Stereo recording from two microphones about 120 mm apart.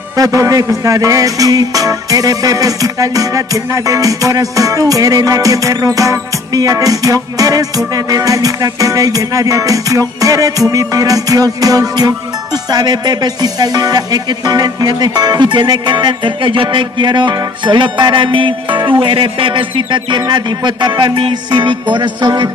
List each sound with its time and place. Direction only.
0.2 s music: 30° right (ahead or behind)